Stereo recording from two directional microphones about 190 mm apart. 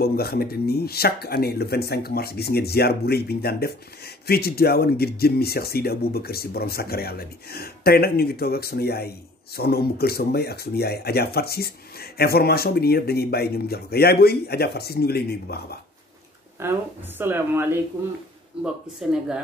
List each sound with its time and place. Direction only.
0.0 s speech: 55° left (ahead or behind)
16.6 s a woman's voice: 10° right (ahead or behind)